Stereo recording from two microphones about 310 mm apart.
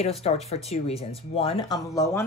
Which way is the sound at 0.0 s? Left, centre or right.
Centre.